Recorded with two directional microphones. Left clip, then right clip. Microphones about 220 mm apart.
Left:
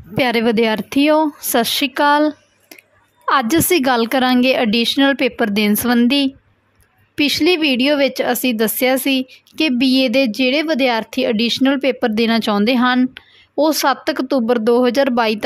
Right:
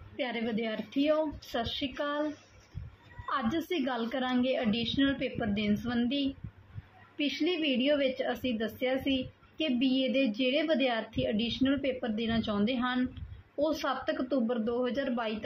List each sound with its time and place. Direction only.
0.2 s speech: 60° left (ahead or behind)
3.3 s speech: 60° left (ahead or behind)